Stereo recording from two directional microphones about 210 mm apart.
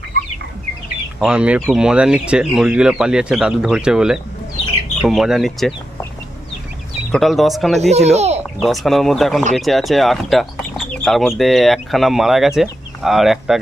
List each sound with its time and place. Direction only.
1.2 s speech: 5° right (ahead or behind)
7.1 s speech: centre (ahead or behind)
7.8 s a child's voice: 30° right (ahead or behind)
8.5 s speech: centre (ahead or behind)